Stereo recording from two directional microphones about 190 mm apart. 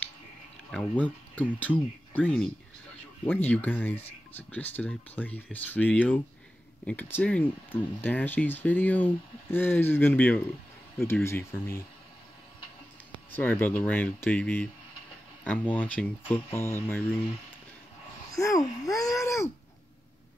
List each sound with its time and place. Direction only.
0.7 s speech: 5° left (ahead or behind)
13.3 s speech: 10° left (ahead or behind)
18.3 s speech: 15° left (ahead or behind)